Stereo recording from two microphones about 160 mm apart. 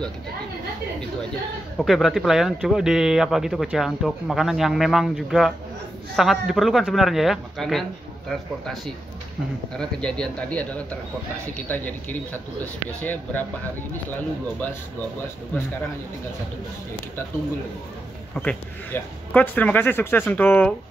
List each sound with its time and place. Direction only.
1.8 s speech: centre (ahead or behind)
9.8 s speech: 5° left (ahead or behind)
15.5 s speech: 10° left (ahead or behind)
18.3 s speech: 5° left (ahead or behind)